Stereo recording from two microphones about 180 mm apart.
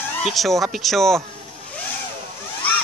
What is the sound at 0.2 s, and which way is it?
Speech, centre (ahead or behind).